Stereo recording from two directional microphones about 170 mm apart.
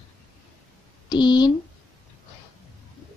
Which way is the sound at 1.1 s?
25° left (ahead or behind).